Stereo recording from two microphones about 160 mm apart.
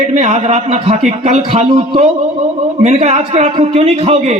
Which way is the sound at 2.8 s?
45° right (ahead or behind).